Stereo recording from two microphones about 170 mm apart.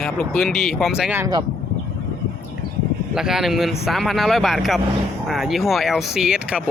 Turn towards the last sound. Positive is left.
turn(degrees=-5)  # may be behind; listen again after turning